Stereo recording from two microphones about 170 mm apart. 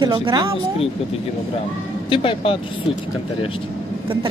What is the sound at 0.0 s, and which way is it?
Speech, 25° right (ahead or behind).